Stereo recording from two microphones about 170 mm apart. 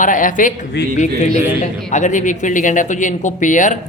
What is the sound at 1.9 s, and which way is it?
A man's voice, 45° left (ahead or behind).